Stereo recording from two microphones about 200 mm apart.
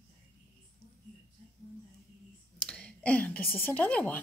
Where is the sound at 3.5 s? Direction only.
10° left (ahead or behind).